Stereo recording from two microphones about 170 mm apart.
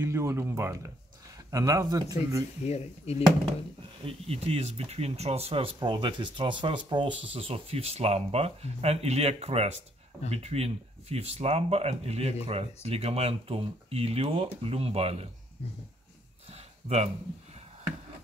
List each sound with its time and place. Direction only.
0.0 s speech: 15° right (ahead or behind)
2.6 s speech: 40° left (ahead or behind)
4.0 s speech: 35° right (ahead or behind)
16.4 s a sound: 40° right (ahead or behind)